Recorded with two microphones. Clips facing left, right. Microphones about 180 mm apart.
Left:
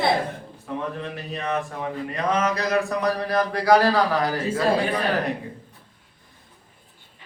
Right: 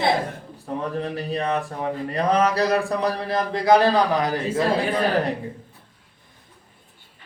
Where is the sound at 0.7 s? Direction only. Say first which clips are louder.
Right 3 dB; 35° right (ahead or behind); by 4.6 s 20° right (ahead or behind).